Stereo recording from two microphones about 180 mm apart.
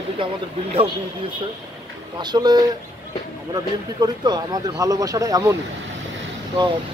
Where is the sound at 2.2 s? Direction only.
25° right (ahead or behind).